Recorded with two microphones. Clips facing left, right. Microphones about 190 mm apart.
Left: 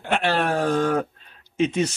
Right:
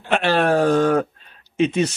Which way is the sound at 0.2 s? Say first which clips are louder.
Right 7 dB; 75° right (ahead or behind).